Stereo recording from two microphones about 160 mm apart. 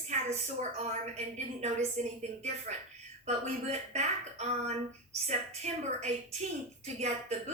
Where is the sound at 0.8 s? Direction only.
45° right (ahead or behind).